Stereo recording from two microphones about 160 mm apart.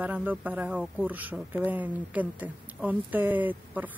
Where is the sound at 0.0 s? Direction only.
10° right (ahead or behind).